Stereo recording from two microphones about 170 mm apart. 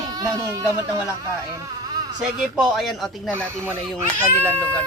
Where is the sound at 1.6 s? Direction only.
25° right (ahead or behind).